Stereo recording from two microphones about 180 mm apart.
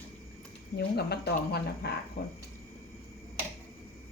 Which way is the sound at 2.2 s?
70° left (ahead or behind).